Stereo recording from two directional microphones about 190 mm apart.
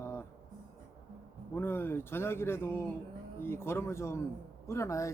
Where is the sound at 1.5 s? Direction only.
10° left (ahead or behind).